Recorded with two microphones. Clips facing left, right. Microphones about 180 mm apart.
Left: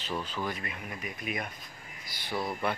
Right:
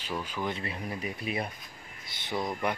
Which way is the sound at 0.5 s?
30° right (ahead or behind).